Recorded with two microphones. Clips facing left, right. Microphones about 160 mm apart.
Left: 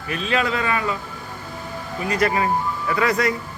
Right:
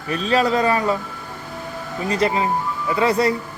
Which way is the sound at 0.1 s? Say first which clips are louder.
Right 4 dB; 35° right (ahead or behind).